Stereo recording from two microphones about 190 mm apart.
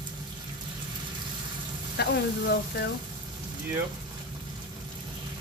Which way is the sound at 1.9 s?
60° left (ahead or behind).